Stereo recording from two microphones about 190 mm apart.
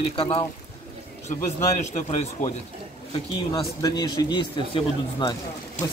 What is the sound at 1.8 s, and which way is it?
Speech, 35° left (ahead or behind).